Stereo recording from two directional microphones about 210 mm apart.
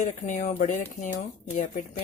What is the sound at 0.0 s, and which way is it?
Speech, 35° left (ahead or behind).